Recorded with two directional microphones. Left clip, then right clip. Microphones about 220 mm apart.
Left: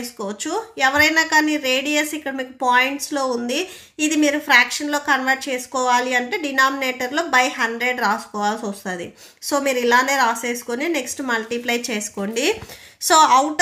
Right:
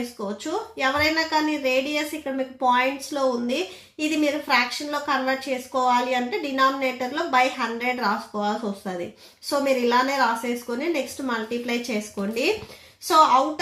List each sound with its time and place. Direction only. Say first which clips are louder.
0.2 s a woman's voice: left 5 dB; 40° left (ahead or behind)